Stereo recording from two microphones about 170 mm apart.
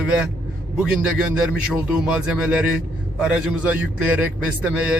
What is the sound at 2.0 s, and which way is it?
A man's voice, 5° right (ahead or behind).